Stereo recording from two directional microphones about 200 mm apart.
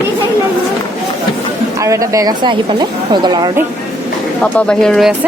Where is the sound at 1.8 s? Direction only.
15° right (ahead or behind).